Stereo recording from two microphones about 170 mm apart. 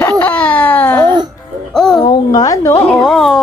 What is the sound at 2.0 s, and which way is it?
Speech, 20° left (ahead or behind).